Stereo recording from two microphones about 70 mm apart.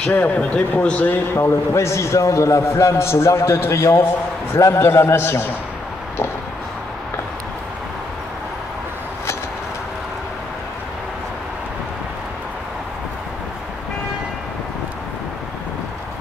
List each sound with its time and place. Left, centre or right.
0.1 s speech: left
1.7 s a man's voice: left